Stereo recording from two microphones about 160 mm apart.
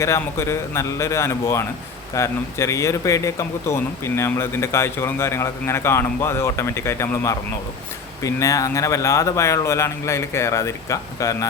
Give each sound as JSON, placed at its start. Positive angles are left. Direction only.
{"t": 0.0, "sound": "speech", "side_deg": 15}